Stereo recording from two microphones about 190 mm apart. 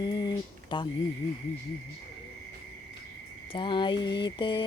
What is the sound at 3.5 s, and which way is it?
Mantra, 25° left (ahead or behind).